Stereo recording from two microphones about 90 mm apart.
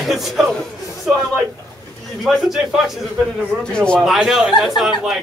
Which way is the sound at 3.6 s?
10° left (ahead or behind).